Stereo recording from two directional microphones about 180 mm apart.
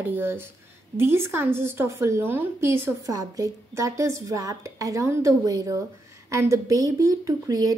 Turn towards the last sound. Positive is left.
turn(degrees=-20)  # may be behind; listen again after turning